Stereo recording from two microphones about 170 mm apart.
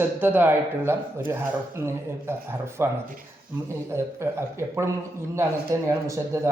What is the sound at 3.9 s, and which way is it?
A man's voice, 15° right (ahead or behind).